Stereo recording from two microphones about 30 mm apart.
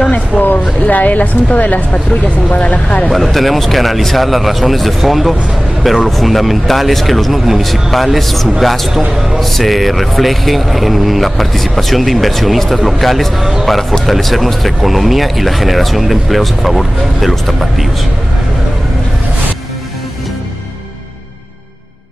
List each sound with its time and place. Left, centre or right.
0.3 s speech: right
0.8 s a woman's voice: left
2.5 s speech: left
3.1 s a man's voice: centre
9.4 s speech: centre